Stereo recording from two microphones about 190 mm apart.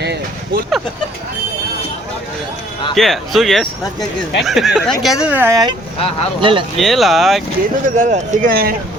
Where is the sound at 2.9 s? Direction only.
Centre (ahead or behind); by 6.7 s 25° right (ahead or behind).